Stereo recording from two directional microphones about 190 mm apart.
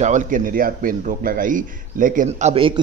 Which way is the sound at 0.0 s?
40° right (ahead or behind).